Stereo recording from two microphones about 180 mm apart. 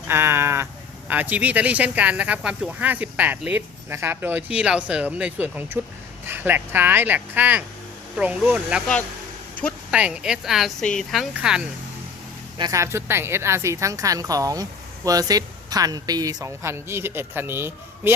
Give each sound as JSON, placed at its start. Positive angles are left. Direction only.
{"t": 0.1, "sound": "a woman's voice", "side_deg": -15}
{"t": 12.5, "sound": "a woman's voice", "side_deg": -20}